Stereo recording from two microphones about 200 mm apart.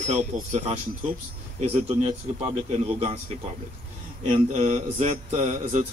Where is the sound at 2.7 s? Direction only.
30° right (ahead or behind).